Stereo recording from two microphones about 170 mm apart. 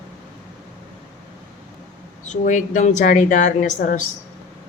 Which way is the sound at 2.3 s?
45° left (ahead or behind).